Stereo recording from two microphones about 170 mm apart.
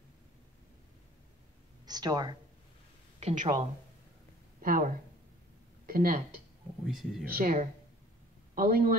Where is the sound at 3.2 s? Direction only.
45° right (ahead or behind).